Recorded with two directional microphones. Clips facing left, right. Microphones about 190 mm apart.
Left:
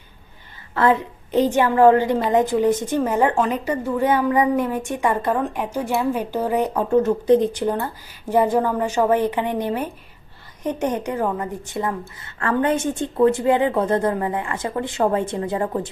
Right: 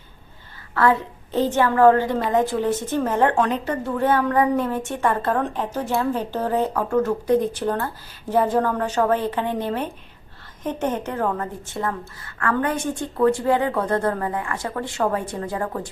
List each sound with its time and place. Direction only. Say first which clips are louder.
0.7 s a woman's voice: left 1 dB; 20° left (ahead or behind)